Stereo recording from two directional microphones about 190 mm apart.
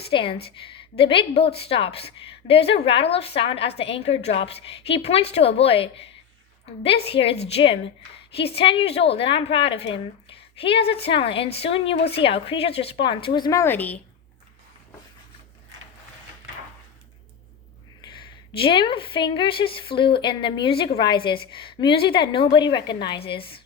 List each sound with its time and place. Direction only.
0.1 s a woman's voice: 25° left (ahead or behind); by 14.0 s 10° left (ahead or behind)
18.0 s speech: 25° left (ahead or behind)